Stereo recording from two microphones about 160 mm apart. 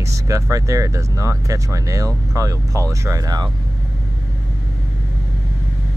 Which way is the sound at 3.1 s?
25° right (ahead or behind).